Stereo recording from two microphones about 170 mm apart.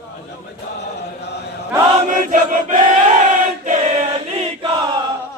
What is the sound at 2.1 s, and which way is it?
Choir, 50° right (ahead or behind).